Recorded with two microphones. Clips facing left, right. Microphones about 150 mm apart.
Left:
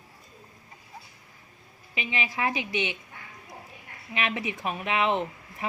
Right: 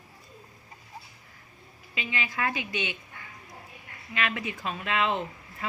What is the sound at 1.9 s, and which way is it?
Speech, 20° left (ahead or behind).